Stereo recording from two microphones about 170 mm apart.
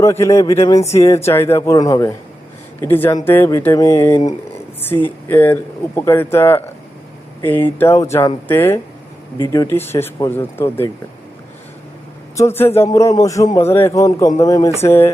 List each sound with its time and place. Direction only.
0.0 s speech: 15° left (ahead or behind)
12.4 s a man's voice: 15° left (ahead or behind)